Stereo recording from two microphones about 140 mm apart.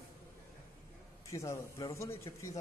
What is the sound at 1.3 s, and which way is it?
A man's voice, 20° left (ahead or behind).